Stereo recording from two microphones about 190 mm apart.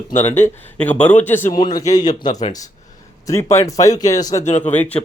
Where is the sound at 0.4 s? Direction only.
10° left (ahead or behind).